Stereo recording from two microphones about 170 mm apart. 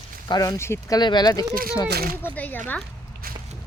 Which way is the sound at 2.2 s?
10° left (ahead or behind).